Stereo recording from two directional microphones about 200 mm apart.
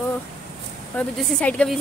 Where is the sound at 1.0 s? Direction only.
5° left (ahead or behind).